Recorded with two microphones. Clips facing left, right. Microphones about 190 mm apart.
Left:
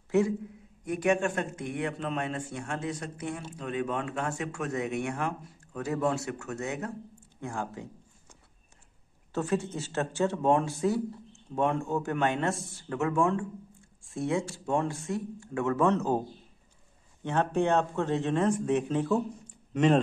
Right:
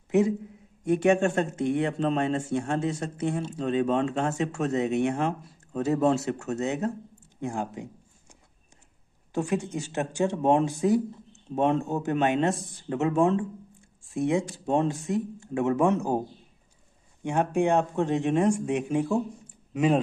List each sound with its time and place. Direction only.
0.1 s a man's voice: 20° right (ahead or behind)
7.3 s a sound: 20° right (ahead or behind)
9.3 s a man's voice: 15° right (ahead or behind)